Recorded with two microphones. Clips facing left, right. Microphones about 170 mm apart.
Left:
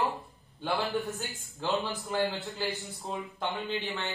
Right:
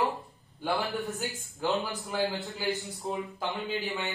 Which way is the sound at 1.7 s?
Centre (ahead or behind).